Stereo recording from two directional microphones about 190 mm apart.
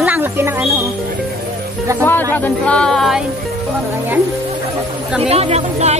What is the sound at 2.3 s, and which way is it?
Speech, 10° left (ahead or behind).